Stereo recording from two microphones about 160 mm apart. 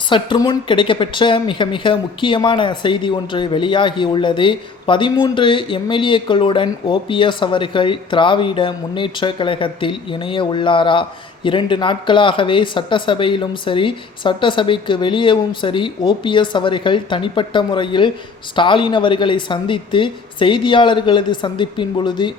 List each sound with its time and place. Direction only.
0.1 s speech: 30° left (ahead or behind)